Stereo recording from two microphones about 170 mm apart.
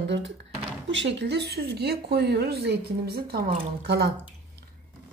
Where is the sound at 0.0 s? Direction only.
90° right.